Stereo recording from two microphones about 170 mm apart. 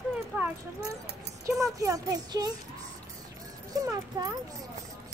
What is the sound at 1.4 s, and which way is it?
Speech, 20° right (ahead or behind).